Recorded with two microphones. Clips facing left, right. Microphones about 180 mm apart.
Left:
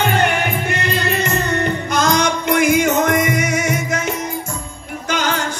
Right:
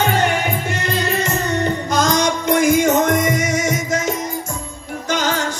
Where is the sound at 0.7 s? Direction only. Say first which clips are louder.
Even; 60° left (ahead or behind).